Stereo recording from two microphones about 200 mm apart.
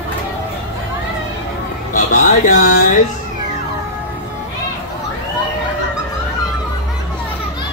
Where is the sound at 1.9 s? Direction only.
40° left (ahead or behind).